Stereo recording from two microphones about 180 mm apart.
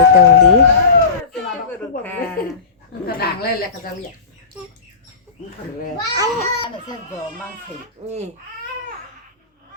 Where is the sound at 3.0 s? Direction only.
60° left (ahead or behind).